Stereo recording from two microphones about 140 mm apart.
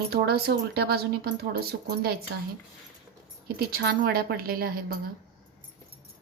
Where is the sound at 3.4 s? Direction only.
90° right.